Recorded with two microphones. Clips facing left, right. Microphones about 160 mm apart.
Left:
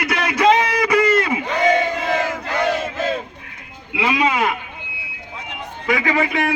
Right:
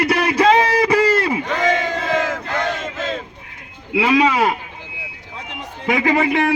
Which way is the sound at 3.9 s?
35° right (ahead or behind).